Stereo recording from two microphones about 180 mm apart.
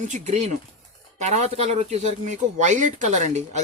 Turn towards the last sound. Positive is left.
turn(degrees=-40)  # may be behind; listen again after turning